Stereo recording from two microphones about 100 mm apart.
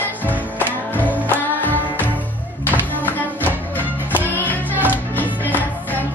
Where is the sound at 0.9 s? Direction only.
15° left (ahead or behind).